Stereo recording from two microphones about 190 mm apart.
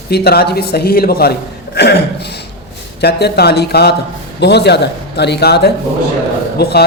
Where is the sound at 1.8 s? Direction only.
60° left (ahead or behind).